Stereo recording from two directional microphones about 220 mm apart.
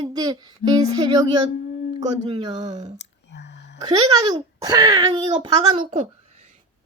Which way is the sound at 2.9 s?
50° left (ahead or behind).